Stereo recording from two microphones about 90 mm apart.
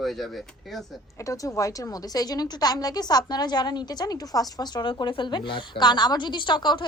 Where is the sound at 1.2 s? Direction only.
40° left (ahead or behind).